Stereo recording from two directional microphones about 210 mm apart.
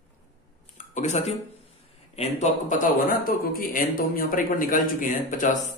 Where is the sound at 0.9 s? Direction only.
35° left (ahead or behind).